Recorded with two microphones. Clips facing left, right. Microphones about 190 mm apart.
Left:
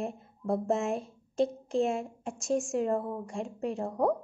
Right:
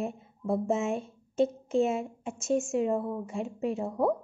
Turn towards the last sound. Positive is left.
turn(degrees=-5)  # may be behind; listen again after turning